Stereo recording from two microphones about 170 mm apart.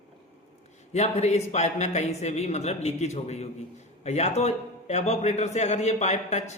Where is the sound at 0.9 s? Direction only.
40° left (ahead or behind).